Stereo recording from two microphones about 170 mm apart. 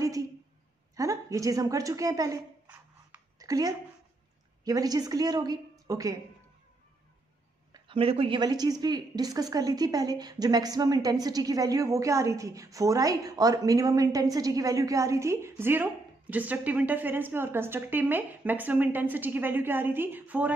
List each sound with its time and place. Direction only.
0.0 s a sound: 20° right (ahead or behind)
0.9 s a woman's voice: 20° right (ahead or behind)
7.7 s a woman's voice: 35° right (ahead or behind); by 20.5 s 10° right (ahead or behind)